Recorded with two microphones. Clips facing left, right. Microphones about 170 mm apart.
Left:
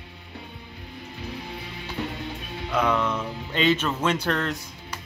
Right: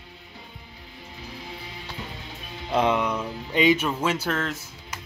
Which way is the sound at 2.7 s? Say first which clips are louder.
Right 2 dB; 30° right (ahead or behind).